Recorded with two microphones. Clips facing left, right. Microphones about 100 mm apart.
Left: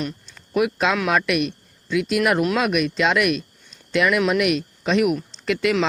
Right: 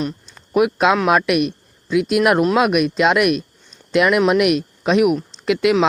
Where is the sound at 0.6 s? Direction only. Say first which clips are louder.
Right 5 dB; 55° right (ahead or behind).